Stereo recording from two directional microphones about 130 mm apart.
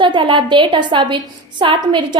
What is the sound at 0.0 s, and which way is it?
A woman's voice, 35° right (ahead or behind).